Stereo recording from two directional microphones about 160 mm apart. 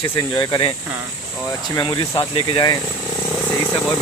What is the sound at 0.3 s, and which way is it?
Speech, 25° left (ahead or behind).